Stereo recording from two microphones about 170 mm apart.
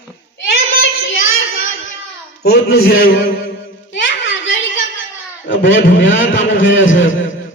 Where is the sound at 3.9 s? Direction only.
90° left.